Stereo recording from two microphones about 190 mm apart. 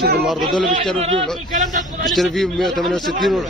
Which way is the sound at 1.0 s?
30° right (ahead or behind).